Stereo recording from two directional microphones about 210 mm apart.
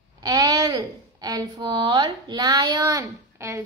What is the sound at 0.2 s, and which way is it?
A woman's voice, 15° right (ahead or behind).